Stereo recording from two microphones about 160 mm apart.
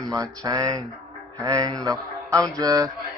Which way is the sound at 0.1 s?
20° right (ahead or behind).